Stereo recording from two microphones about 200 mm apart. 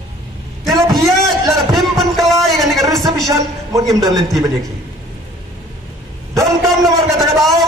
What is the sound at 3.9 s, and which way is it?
Speech, 20° right (ahead or behind).